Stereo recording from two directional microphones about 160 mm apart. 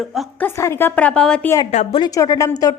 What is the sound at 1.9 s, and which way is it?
Speech, 25° left (ahead or behind).